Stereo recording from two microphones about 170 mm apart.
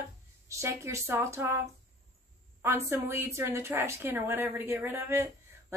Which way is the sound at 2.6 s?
15° right (ahead or behind).